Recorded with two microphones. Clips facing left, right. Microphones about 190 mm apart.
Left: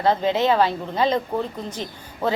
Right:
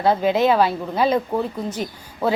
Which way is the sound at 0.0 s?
10° right (ahead or behind).